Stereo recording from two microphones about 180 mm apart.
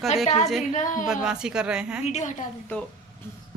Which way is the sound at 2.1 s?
40° left (ahead or behind).